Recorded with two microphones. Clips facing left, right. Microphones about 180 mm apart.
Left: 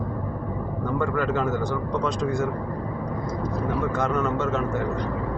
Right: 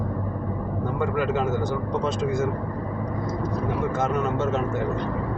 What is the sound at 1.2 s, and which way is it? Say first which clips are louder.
Speech: right 3 dB; 20° right (ahead or behind).